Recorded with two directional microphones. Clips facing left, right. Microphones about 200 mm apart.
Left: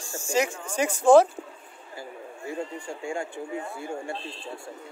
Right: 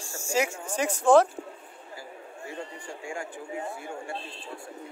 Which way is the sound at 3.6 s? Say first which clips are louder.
Even; 25° right (ahead or behind).